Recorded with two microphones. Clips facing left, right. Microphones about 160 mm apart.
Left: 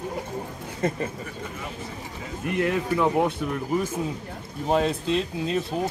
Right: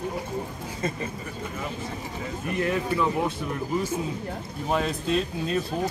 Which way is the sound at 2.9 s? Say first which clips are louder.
Left 5 dB; 65° left (ahead or behind).